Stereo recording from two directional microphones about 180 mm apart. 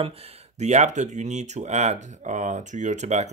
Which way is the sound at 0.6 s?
40° right (ahead or behind).